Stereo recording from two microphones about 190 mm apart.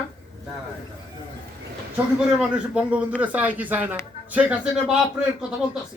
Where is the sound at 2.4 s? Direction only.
5° right (ahead or behind).